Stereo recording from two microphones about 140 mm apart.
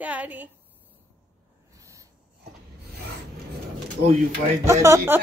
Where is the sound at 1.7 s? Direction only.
25° right (ahead or behind).